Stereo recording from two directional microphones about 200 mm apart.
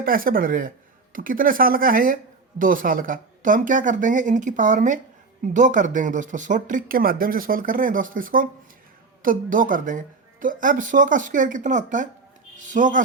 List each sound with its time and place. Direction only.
0.0 s speech: 45° right (ahead or behind)